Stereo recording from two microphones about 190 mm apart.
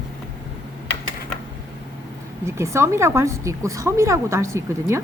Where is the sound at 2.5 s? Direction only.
15° right (ahead or behind).